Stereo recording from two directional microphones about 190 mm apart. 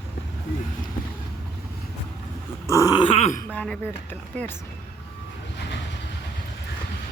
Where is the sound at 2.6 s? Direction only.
15° left (ahead or behind); by 3.4 s 35° left (ahead or behind).